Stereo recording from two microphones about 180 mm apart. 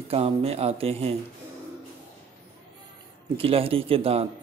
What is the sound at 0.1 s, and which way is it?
Speech, 35° right (ahead or behind).